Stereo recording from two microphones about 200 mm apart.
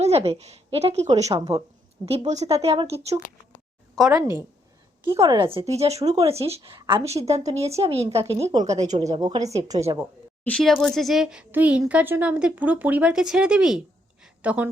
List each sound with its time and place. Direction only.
0.0 s a woman's voice: 30° right (ahead or behind)
1.3 s a woman's voice: 20° right (ahead or behind)
2.0 s speech: 35° right (ahead or behind)
4.1 s a woman's voice: 15° right (ahead or behind); by 8.2 s 30° right (ahead or behind)
8.2 s a woman's voice: 15° right (ahead or behind)
10.4 s speech: 5° left (ahead or behind)